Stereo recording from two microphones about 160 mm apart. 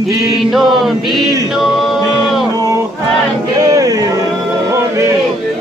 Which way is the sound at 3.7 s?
20° right (ahead or behind).